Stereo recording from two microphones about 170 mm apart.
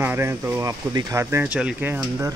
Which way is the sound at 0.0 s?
15° right (ahead or behind).